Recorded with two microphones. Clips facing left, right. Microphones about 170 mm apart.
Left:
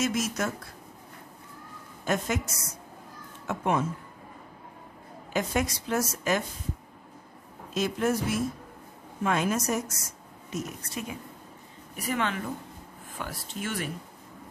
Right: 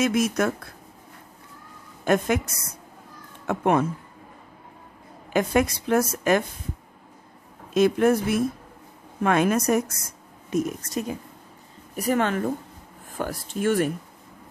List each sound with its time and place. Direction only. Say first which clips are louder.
0.0 s a woman's voice: right 6 dB; 60° right (ahead or behind)
2.0 s a woman's voice: right 7 dB; 60° right (ahead or behind)
5.3 s a woman's voice: right 7 dB; 55° right (ahead or behind)
7.7 s a woman's voice: right 8 dB; 55° right (ahead or behind)